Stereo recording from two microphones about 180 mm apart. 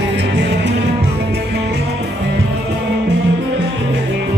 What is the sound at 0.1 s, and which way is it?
Music, 70° right (ahead or behind).